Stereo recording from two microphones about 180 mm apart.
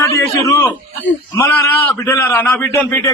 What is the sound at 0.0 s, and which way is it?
A man's voice, 15° left (ahead or behind).